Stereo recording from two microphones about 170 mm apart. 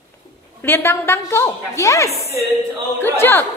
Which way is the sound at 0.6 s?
15° left (ahead or behind).